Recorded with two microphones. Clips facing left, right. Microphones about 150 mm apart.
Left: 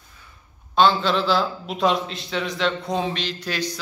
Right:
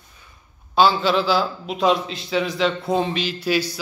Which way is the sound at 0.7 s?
5° right (ahead or behind).